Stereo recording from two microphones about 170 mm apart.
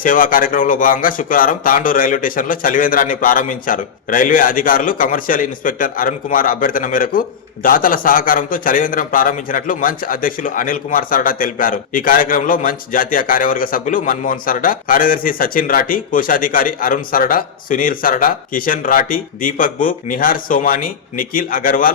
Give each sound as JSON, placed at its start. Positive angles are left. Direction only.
{"t": 0.0, "sound": "speech", "side_deg": 55}